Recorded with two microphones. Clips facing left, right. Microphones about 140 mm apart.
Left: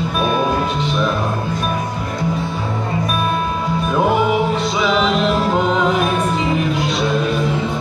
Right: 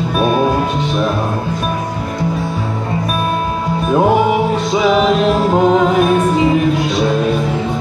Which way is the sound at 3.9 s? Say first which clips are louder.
Right 4 dB; 35° right (ahead or behind).